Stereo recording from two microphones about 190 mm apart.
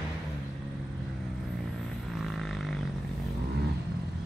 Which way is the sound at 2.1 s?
Centre (ahead or behind).